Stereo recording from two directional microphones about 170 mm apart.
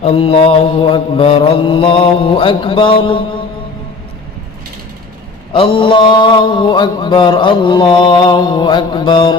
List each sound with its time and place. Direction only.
0.0 s mantra: 35° left (ahead or behind)
5.5 s mantra: 30° left (ahead or behind)